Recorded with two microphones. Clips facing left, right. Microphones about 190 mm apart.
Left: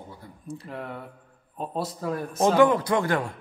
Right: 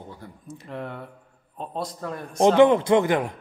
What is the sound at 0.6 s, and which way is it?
A man's voice, centre (ahead or behind).